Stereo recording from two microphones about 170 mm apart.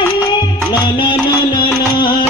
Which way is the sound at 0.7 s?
25° left (ahead or behind).